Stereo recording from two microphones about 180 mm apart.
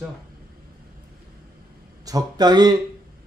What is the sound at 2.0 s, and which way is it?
Speech, 20° right (ahead or behind).